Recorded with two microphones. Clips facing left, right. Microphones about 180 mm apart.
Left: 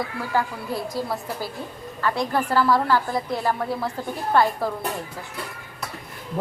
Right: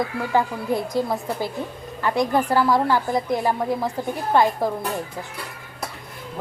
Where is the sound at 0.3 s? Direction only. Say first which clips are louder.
Right 4 dB; 20° right (ahead or behind).